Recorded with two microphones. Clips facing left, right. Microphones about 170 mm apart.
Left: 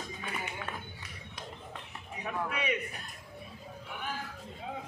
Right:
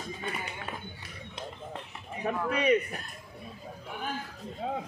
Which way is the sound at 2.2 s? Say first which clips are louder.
Right 8 dB; 40° right (ahead or behind).